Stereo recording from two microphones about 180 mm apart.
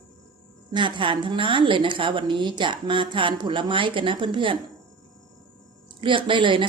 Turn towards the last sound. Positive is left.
turn(degrees=-25)  # may be behind; listen again after turning